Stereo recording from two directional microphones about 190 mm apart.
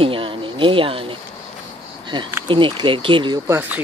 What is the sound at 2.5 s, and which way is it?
Speech, 25° right (ahead or behind).